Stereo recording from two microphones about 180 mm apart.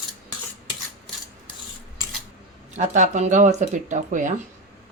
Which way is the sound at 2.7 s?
40° right (ahead or behind).